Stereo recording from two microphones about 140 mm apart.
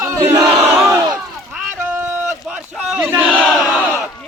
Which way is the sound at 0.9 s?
25° right (ahead or behind).